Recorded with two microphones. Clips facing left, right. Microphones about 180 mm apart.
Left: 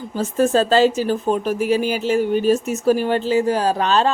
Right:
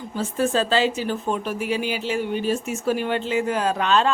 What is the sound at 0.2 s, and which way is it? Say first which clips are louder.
Speech: left 5 dB; 45° left (ahead or behind).